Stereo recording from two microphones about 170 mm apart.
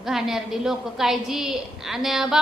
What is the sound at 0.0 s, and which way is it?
A woman's voice, centre (ahead or behind).